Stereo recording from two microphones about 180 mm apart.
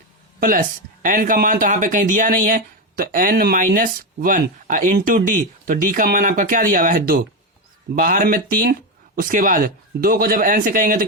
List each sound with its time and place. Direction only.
0.3 s speech: 50° right (ahead or behind)